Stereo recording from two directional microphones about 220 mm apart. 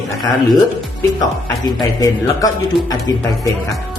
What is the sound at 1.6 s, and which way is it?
Speech, 15° left (ahead or behind).